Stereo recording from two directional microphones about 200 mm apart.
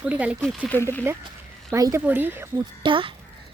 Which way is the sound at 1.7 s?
15° right (ahead or behind).